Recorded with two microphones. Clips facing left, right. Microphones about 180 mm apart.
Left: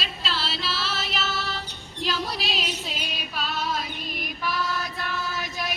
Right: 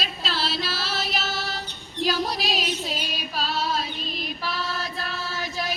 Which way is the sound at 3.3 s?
30° right (ahead or behind).